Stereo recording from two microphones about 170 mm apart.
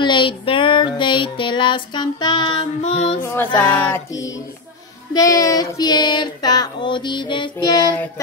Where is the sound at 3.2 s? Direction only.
15° left (ahead or behind).